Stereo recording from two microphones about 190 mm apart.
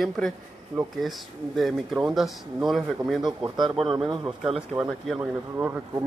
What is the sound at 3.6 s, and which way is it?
Speech, 25° right (ahead or behind).